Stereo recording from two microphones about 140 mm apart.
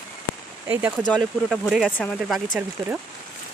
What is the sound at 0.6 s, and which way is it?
Speech, 15° right (ahead or behind).